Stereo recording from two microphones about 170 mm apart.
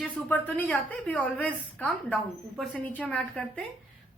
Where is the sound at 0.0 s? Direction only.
10° left (ahead or behind).